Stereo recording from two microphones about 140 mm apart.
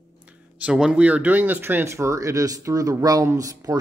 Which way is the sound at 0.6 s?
5° right (ahead or behind).